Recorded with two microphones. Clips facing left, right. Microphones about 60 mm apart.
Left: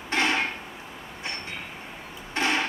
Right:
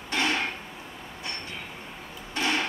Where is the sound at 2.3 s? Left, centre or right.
Left.